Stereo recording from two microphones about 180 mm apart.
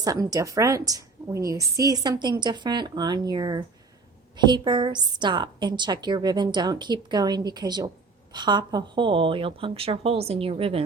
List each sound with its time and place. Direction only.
0.0 s a woman's voice: 20° right (ahead or behind)